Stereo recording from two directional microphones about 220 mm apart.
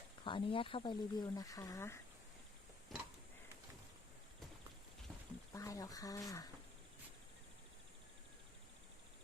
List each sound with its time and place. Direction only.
0.3 s speech: 25° left (ahead or behind)
2.9 s a sound: centre (ahead or behind)
5.5 s speech: 15° left (ahead or behind)